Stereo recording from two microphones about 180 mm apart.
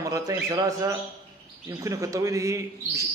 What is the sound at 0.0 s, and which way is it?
Speech, 20° right (ahead or behind).